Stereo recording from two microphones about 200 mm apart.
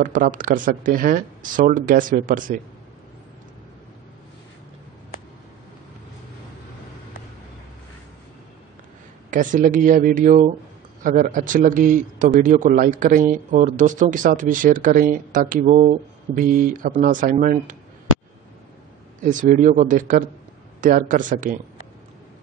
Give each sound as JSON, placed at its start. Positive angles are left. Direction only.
{"t": 0.0, "sound": "speech", "side_deg": -40}
{"t": 9.3, "sound": "a man's voice", "side_deg": -40}
{"t": 19.2, "sound": "a man's voice", "side_deg": -40}